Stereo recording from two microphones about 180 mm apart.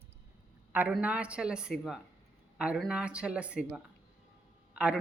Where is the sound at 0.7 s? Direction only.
10° right (ahead or behind).